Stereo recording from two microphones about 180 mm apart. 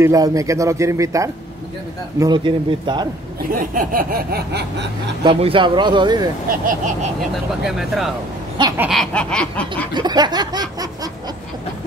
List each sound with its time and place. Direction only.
0.0 s a man's voice: 20° right (ahead or behind)
3.5 s a sound: 50° right (ahead or behind); by 4.8 s 65° right (ahead or behind)
5.2 s a man's voice: 30° right (ahead or behind)
6.6 s vehicle: 45° right (ahead or behind)
7.2 s a sound: centre (ahead or behind)
9.9 s a man's voice: 25° right (ahead or behind)